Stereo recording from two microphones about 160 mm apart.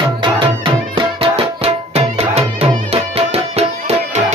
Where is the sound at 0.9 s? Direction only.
35° right (ahead or behind).